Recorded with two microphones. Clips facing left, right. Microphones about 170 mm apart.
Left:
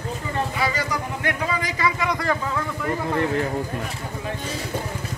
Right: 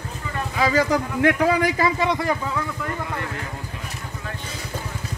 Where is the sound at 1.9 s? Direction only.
30° right (ahead or behind).